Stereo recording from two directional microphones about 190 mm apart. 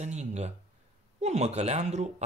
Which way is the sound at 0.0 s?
35° right (ahead or behind).